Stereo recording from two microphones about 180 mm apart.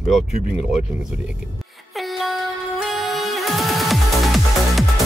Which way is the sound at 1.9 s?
Centre (ahead or behind).